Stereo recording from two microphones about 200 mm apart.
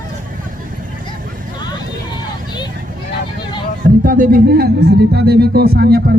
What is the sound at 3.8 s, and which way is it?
Speech, 45° right (ahead or behind).